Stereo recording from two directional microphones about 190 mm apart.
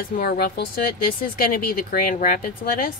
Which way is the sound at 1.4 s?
50° left (ahead or behind).